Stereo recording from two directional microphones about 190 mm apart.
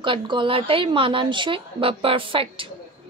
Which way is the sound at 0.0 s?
25° right (ahead or behind).